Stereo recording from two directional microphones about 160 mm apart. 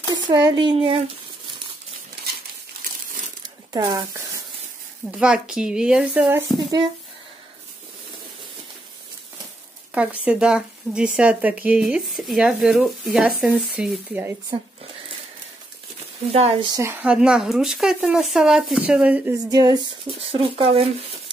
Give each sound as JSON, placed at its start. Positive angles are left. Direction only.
{"t": 0.3, "sound": "speech", "side_deg": -25}
{"t": 3.7, "sound": "speech", "side_deg": -25}
{"t": 5.1, "sound": "speech", "side_deg": -5}
{"t": 9.9, "sound": "speech", "side_deg": -5}
{"t": 14.5, "sound": "speech", "side_deg": -35}
{"t": 16.3, "sound": "speech", "side_deg": -40}
{"t": 16.7, "sound": "speech", "side_deg": -15}
{"t": 19.3, "sound": "speech", "side_deg": -25}